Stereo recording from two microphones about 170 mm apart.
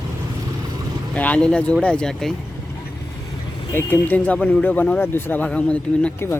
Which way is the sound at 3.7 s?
10° left (ahead or behind).